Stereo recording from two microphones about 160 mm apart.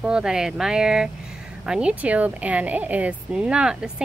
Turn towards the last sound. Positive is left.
turn(degrees=-5)  # may be behind; listen again after turning